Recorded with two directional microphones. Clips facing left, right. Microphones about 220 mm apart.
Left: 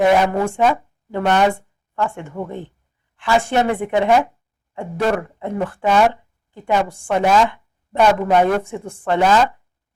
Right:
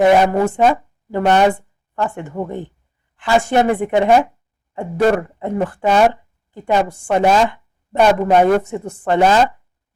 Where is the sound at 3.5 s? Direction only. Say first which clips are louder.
Right 3 dB; 45° right (ahead or behind).